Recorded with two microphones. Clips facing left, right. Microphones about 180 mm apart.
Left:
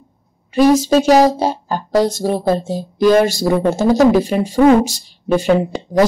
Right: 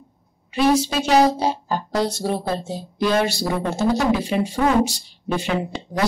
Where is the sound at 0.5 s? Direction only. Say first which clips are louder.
Left 7 dB; 45° left (ahead or behind).